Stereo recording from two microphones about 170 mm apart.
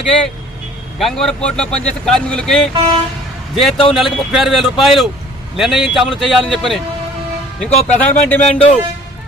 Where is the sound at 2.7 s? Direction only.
35° right (ahead or behind).